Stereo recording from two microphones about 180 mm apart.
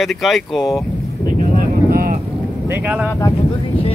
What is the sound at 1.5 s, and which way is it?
Vehicle, 50° right (ahead or behind).